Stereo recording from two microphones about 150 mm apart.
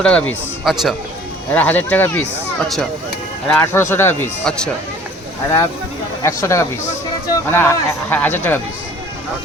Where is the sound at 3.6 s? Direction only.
20° left (ahead or behind).